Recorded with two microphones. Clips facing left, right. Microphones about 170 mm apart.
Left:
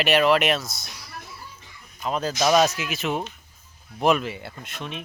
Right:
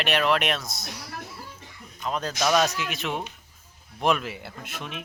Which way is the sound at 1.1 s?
90° right.